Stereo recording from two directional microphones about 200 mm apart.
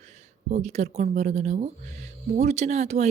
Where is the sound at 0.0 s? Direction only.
35° right (ahead or behind).